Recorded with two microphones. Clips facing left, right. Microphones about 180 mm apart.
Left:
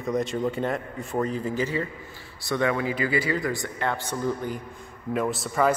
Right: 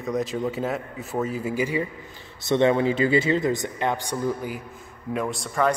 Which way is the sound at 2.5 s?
25° right (ahead or behind).